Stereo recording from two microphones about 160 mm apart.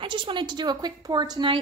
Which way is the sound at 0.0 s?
30° right (ahead or behind).